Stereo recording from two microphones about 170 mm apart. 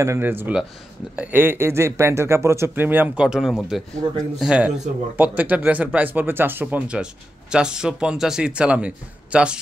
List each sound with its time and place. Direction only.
0.0 s speech: 15° right (ahead or behind)
4.0 s speech: 30° right (ahead or behind)
4.4 s a man's voice: 5° right (ahead or behind)